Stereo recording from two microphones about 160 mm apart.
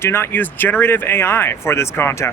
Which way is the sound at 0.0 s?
15° left (ahead or behind).